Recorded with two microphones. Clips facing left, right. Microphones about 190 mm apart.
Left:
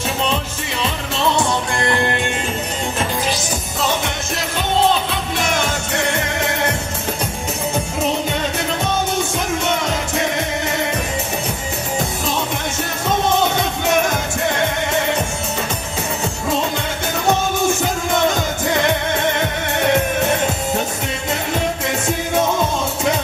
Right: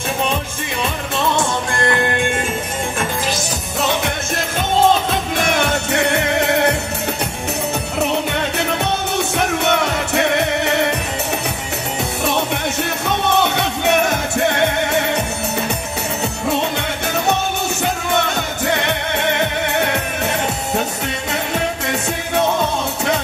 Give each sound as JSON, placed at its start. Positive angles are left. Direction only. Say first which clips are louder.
{"t": 1.1, "sound": "music", "louder": "left 1 dB", "side_deg": -50}
{"t": 5.4, "sound": "music", "louder": "right 2 dB", "side_deg": -60}
{"t": 8.0, "sound": "music", "louder": "right 2 dB", "side_deg": -65}
{"t": 13.3, "sound": "music", "louder": "even", "side_deg": -65}
{"t": 17.3, "sound": "music", "louder": "left 6 dB", "side_deg": -65}